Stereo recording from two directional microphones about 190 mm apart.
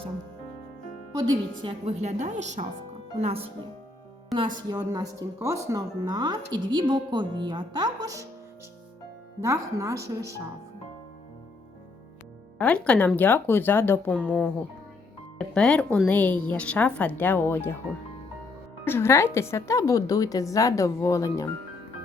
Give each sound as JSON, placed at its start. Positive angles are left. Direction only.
{"t": 1.1, "sound": "speech", "side_deg": -20}
{"t": 1.8, "sound": "a woman's voice", "side_deg": -35}
{"t": 9.4, "sound": "speech", "side_deg": -15}
{"t": 12.5, "sound": "a woman's voice", "side_deg": 5}
{"t": 18.9, "sound": "a woman's voice", "side_deg": 15}